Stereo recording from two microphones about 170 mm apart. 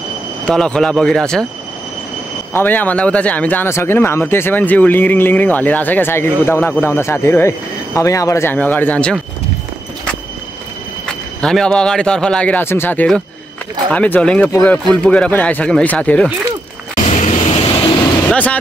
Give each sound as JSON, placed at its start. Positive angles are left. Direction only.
{"t": 0.5, "sound": "speech", "side_deg": 5}
{"t": 2.5, "sound": "speech", "side_deg": 10}
{"t": 11.4, "sound": "speech", "side_deg": 5}
{"t": 17.1, "sound": "vehicle", "side_deg": 40}
{"t": 18.3, "sound": "speech", "side_deg": 10}